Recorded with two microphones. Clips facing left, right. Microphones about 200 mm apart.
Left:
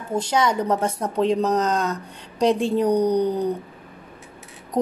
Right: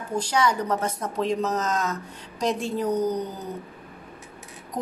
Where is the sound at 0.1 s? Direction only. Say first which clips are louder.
Left 3 dB; 25° left (ahead or behind).